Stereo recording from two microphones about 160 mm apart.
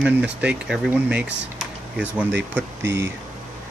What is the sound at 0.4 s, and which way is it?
Speech, 5° right (ahead or behind).